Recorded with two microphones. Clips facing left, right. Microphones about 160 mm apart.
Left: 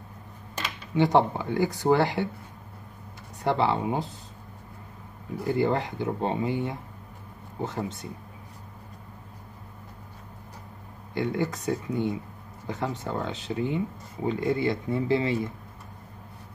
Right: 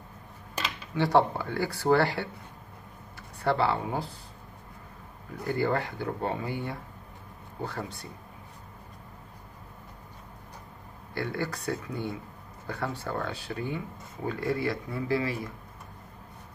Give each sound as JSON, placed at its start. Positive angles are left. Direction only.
{"t": 0.9, "sound": "speech", "side_deg": 20}
{"t": 3.4, "sound": "speech", "side_deg": 20}
{"t": 5.5, "sound": "speech", "side_deg": 20}
{"t": 11.1, "sound": "speech", "side_deg": 20}